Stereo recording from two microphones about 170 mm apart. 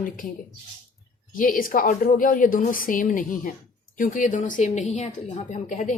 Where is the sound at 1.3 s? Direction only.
55° left (ahead or behind).